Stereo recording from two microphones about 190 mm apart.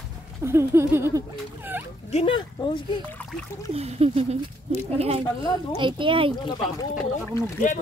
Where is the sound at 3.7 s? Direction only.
30° right (ahead or behind).